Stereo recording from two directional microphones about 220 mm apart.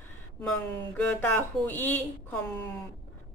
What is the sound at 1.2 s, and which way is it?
A woman's voice, 10° left (ahead or behind).